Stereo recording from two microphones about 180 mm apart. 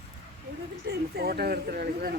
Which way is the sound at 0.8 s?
60° right (ahead or behind).